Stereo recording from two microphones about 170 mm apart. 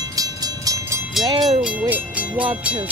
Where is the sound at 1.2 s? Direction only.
35° right (ahead or behind).